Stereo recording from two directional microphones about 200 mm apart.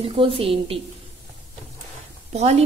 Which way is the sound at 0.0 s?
25° right (ahead or behind).